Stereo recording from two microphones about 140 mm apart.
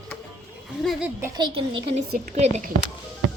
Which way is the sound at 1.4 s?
35° right (ahead or behind).